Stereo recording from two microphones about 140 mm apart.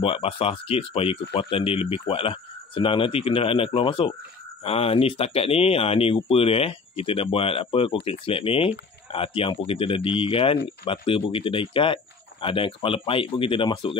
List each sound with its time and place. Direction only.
0.0 s speech: 45° left (ahead or behind)